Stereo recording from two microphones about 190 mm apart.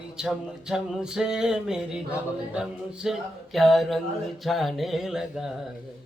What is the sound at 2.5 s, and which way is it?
Speech, 5° right (ahead or behind).